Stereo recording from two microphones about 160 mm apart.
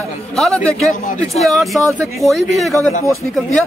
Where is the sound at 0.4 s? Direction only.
5° left (ahead or behind).